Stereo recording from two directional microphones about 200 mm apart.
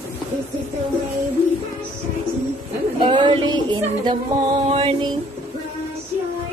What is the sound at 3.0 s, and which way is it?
Speech, 25° right (ahead or behind).